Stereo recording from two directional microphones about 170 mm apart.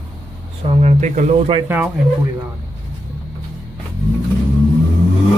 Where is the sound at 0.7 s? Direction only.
40° right (ahead or behind).